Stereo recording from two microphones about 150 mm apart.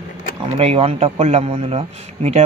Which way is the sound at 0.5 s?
45° right (ahead or behind).